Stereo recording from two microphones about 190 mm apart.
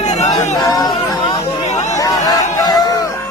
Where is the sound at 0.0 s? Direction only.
35° left (ahead or behind).